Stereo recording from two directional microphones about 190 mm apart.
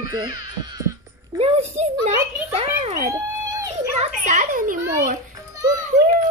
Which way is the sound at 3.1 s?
20° right (ahead or behind).